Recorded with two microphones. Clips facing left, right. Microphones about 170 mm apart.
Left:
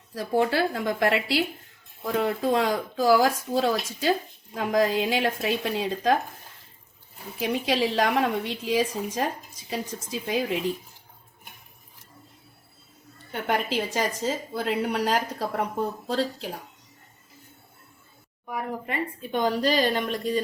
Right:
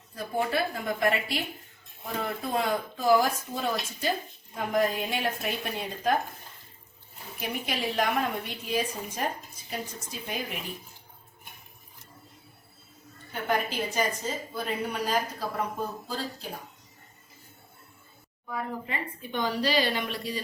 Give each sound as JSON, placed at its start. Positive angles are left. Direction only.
{"t": 0.1, "sound": "a woman's voice", "side_deg": 85}
{"t": 7.3, "sound": "a woman's voice", "side_deg": 90}
{"t": 13.5, "sound": "a woman's voice", "side_deg": 90}
{"t": 19.3, "sound": "a woman's voice", "side_deg": 45}